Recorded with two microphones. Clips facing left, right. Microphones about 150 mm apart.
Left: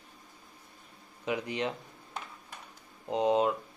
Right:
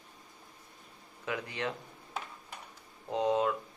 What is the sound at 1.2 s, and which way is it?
Speech, 20° left (ahead or behind).